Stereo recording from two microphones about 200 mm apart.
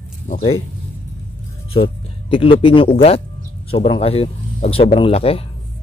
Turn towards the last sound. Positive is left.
turn(degrees=30)  # may be behind; listen again after turning